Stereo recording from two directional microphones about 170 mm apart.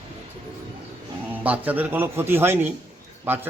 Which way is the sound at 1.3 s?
10° right (ahead or behind).